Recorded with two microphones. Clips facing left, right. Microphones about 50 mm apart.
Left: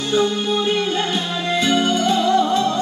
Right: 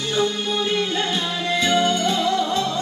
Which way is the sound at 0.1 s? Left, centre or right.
Centre.